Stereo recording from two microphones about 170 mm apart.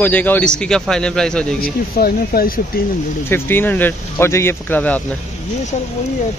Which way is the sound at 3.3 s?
10° left (ahead or behind).